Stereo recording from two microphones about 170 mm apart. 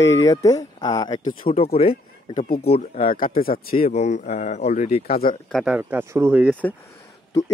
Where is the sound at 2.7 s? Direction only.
35° left (ahead or behind).